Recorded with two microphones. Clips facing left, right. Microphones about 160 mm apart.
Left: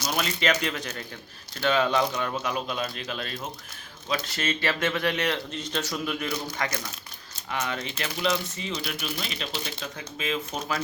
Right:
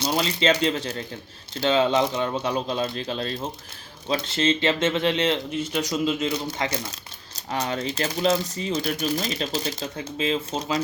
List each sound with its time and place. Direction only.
0.0 s speech: 30° right (ahead or behind)
5.5 s speech: 10° right (ahead or behind)
5.9 s speech: 20° right (ahead or behind)
7.3 s speech: 35° right (ahead or behind)